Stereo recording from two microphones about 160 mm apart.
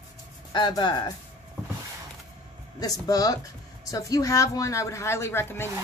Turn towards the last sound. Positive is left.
turn(degrees=15)  # may be behind; listen again after turning